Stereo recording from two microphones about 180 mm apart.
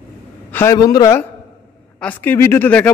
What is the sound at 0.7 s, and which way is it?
A man's voice, 20° left (ahead or behind).